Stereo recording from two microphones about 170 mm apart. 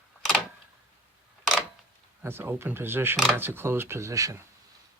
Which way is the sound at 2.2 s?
10° right (ahead or behind).